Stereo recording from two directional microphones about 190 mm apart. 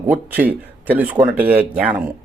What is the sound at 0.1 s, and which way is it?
Speech, 10° right (ahead or behind).